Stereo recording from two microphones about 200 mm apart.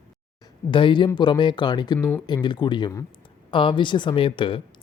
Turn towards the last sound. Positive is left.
turn(degrees=25)  # may be behind; listen again after turning